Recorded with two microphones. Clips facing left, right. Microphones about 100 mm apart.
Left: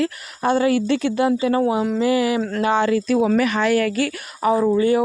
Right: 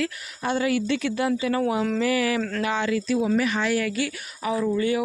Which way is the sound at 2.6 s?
40° left (ahead or behind).